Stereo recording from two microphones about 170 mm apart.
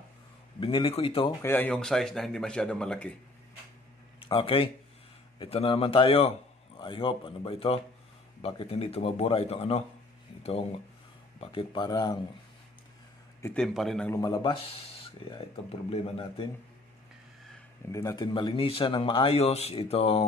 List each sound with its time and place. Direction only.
0.6 s speech: 30° left (ahead or behind)
1.4 s speech: 10° left (ahead or behind)
4.2 s speech: 30° left (ahead or behind)
13.4 s speech: 5° left (ahead or behind)
14.1 s speech: 20° left (ahead or behind)
15.9 s speech: 35° left (ahead or behind)
17.8 s speech: 20° left (ahead or behind); by 20.2 s 35° left (ahead or behind)